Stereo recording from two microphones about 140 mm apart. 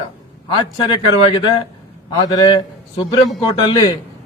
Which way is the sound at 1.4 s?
35° left (ahead or behind).